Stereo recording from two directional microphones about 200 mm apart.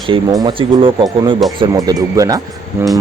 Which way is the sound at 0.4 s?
25° right (ahead or behind).